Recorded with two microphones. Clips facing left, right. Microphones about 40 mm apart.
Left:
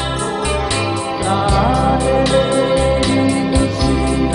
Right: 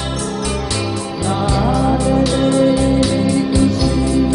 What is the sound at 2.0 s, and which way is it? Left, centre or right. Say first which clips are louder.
Music: left 1 dB; left.